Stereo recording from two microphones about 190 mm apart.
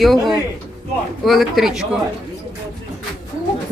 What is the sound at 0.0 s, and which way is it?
Speech, centre (ahead or behind).